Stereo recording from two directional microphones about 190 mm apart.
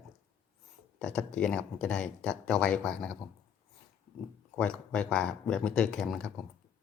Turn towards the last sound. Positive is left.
turn(degrees=0)  # may be behind; listen again after turning